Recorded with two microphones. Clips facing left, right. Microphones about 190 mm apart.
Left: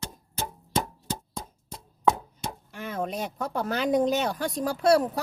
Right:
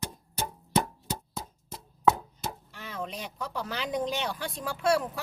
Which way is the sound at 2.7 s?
50° left (ahead or behind).